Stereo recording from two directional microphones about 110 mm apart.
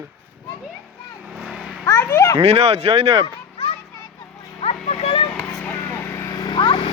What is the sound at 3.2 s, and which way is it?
Children playing, 60° left (ahead or behind).